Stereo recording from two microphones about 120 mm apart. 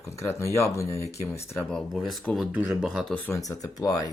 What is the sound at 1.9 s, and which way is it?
Speech, centre (ahead or behind).